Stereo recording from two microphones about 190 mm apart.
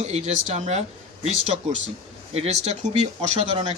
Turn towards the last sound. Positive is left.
turn(degrees=-35)  # may be behind; listen again after turning